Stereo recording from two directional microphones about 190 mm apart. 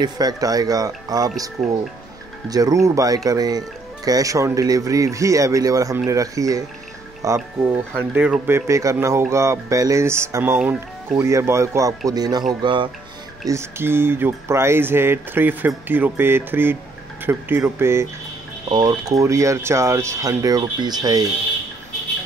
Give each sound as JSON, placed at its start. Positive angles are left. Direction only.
{"t": 0.0, "sound": "speech", "side_deg": -20}
{"t": 2.5, "sound": "speech", "side_deg": -20}
{"t": 13.5, "sound": "speech", "side_deg": -15}